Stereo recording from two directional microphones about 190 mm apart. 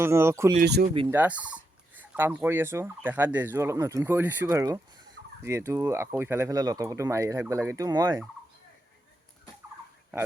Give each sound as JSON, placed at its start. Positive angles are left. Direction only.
{"t": 0.0, "sound": "speech", "side_deg": -15}
{"t": 0.6, "sound": "speech", "side_deg": -60}
{"t": 1.1, "sound": "speech", "side_deg": -10}